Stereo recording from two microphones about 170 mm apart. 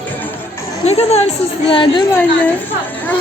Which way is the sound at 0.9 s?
40° left (ahead or behind).